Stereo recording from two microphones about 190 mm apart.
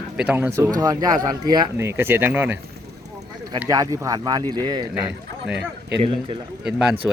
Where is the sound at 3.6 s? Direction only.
20° right (ahead or behind).